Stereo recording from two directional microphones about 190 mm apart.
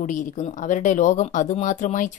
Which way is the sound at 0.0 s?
40° left (ahead or behind).